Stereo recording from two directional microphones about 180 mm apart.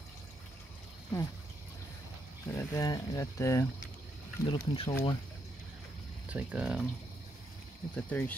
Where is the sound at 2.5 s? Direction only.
15° left (ahead or behind).